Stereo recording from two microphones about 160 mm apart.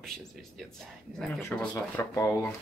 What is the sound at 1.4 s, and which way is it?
Speech, 10° left (ahead or behind).